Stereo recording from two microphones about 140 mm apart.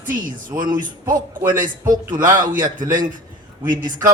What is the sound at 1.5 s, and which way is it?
Speech, 70° right (ahead or behind).